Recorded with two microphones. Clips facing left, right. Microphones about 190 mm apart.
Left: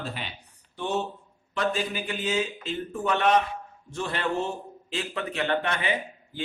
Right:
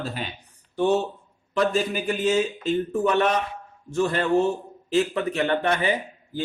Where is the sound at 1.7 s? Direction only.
45° right (ahead or behind).